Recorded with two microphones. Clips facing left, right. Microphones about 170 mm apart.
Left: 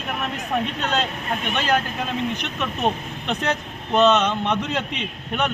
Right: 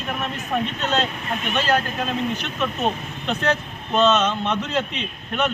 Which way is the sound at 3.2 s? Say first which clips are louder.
Right 2 dB; 15° left (ahead or behind).